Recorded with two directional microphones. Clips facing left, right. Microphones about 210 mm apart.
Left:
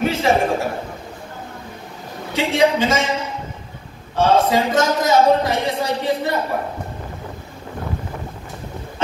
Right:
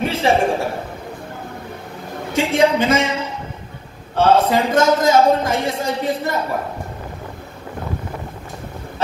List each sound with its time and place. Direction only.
0.0 s a sound: 30° right (ahead or behind)
2.3 s a man's voice: 55° right (ahead or behind)
4.2 s a man's voice: 55° right (ahead or behind)